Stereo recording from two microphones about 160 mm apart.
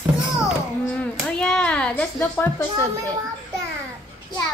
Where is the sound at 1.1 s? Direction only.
5° left (ahead or behind).